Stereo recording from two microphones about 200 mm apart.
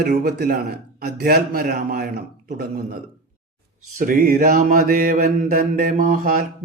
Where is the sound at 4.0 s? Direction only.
45° right (ahead or behind).